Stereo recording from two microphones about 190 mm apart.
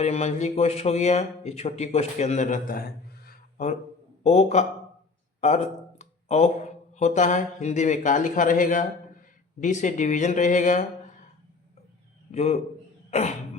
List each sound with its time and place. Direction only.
0.0 s speech: 35° left (ahead or behind)
3.2 s a sound: 40° left (ahead or behind)
4.2 s speech: 35° left (ahead or behind)
12.3 s speech: 35° left (ahead or behind)
13.1 s cough: 40° left (ahead or behind)